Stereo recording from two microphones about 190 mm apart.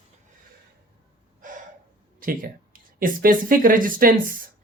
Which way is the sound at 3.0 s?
45° right (ahead or behind).